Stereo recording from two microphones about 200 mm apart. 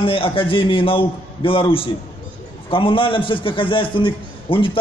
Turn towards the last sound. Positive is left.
turn(degrees=25)  # may be behind; listen again after turning